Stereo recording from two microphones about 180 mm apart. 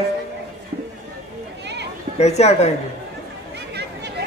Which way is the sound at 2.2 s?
35° left (ahead or behind).